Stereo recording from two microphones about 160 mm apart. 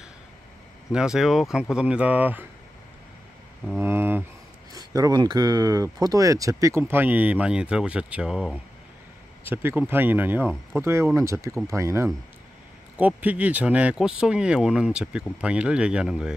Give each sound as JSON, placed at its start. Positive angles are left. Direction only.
{"t": 0.9, "sound": "speech", "side_deg": -5}
{"t": 3.6, "sound": "speech", "side_deg": -10}
{"t": 9.4, "sound": "speech", "side_deg": -15}